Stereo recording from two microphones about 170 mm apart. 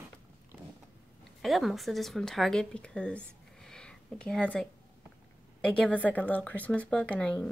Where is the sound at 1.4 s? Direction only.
Centre (ahead or behind).